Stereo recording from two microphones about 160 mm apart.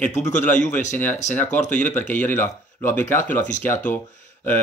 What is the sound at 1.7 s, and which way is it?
Speech, 10° left (ahead or behind).